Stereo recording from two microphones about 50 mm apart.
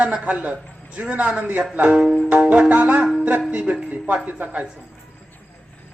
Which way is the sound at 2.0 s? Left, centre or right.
Centre.